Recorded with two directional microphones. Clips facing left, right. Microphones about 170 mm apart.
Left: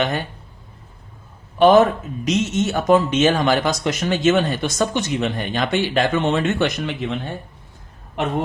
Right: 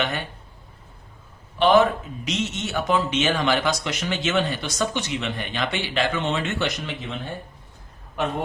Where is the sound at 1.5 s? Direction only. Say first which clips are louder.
Left 5 dB; 45° left (ahead or behind).